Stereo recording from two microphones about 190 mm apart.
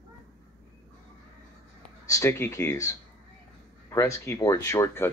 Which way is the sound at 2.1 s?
15° left (ahead or behind).